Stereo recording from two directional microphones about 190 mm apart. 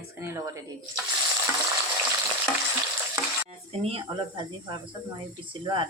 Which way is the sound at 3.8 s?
30° right (ahead or behind).